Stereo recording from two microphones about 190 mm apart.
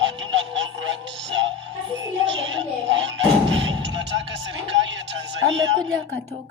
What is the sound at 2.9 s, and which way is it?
Music, 75° right (ahead or behind).